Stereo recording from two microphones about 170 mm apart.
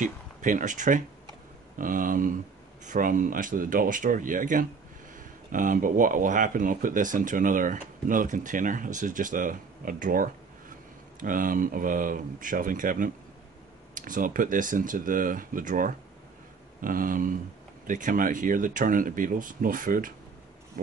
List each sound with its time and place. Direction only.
0.0 s speech: 50° right (ahead or behind)
20.8 s pig: 60° right (ahead or behind)